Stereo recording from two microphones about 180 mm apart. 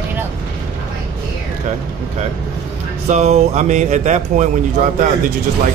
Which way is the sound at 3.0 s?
40° right (ahead or behind).